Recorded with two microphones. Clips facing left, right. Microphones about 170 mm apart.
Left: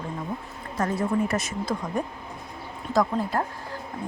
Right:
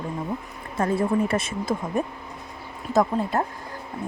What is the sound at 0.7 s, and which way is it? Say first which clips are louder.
Speech: right 3 dB; 30° right (ahead or behind).